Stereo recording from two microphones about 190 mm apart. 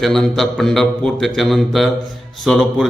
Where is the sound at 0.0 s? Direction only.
Centre (ahead or behind).